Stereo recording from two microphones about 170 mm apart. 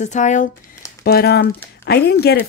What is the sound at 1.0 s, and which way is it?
Speech, 70° left (ahead or behind).